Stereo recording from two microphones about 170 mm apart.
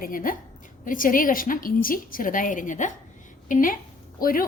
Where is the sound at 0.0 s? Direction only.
55° left (ahead or behind).